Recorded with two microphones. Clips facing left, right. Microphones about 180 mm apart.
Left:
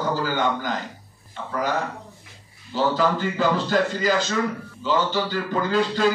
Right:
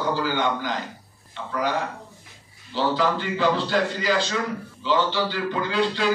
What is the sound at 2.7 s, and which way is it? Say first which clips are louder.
A man's voice: left 1 dB; 45° left (ahead or behind).